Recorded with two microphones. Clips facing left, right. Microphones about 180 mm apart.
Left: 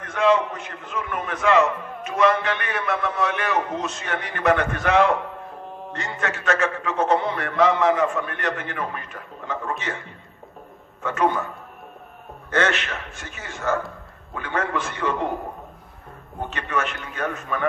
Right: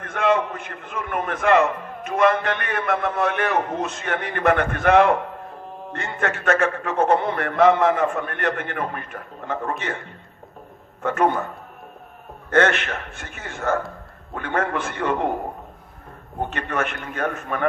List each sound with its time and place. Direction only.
0.0 s a man's voice: 55° right (ahead or behind)
16.4 s a man's voice: 55° right (ahead or behind)